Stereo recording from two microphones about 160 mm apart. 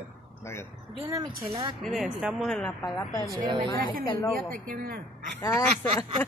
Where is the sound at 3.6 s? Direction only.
30° left (ahead or behind).